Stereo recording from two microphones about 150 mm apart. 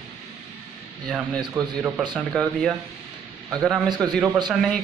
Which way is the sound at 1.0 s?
5° left (ahead or behind).